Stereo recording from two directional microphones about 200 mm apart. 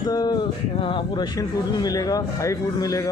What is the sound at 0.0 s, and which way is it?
Speech, 20° left (ahead or behind).